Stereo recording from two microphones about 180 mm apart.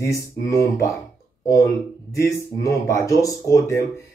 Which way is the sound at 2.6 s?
15° left (ahead or behind).